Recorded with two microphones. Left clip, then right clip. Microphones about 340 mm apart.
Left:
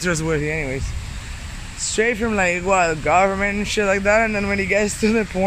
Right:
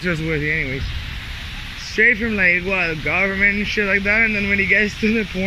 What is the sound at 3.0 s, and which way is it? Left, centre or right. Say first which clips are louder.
Speech: right 3 dB; centre.